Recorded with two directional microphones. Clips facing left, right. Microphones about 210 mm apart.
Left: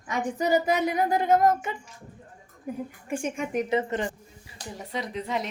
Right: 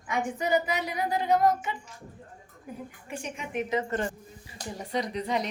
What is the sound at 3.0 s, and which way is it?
Speech, 50° left (ahead or behind).